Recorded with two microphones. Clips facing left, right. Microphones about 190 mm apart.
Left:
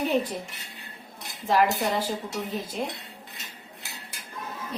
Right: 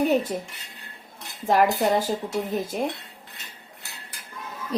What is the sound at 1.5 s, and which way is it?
A woman's voice, 50° right (ahead or behind).